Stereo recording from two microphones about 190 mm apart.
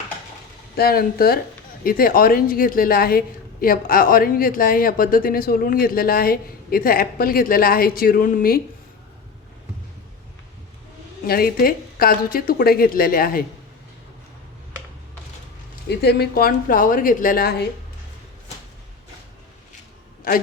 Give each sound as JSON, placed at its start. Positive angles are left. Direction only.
{"t": 0.8, "sound": "a woman's voice", "side_deg": 55}
{"t": 11.3, "sound": "a woman's voice", "side_deg": 50}
{"t": 15.9, "sound": "a woman's voice", "side_deg": 60}
{"t": 20.3, "sound": "a man's voice", "side_deg": 50}